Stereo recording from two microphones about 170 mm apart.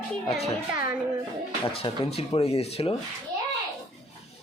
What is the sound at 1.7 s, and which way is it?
Speech, 35° left (ahead or behind).